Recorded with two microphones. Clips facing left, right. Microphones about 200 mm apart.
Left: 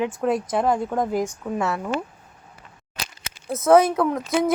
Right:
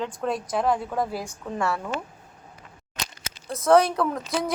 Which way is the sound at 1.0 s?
20° left (ahead or behind).